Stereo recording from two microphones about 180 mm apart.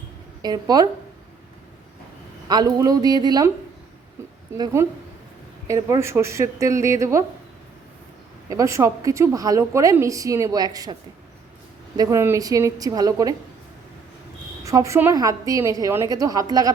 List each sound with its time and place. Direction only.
0.4 s a woman's voice: 20° right (ahead or behind)
2.5 s a woman's voice: 20° right (ahead or behind)
4.2 s a sound: 15° right (ahead or behind)
4.5 s a woman's voice: 20° right (ahead or behind)
8.4 s a woman's voice: 15° right (ahead or behind)
11.9 s a woman's voice: 15° right (ahead or behind)
14.6 s a woman's voice: 15° right (ahead or behind)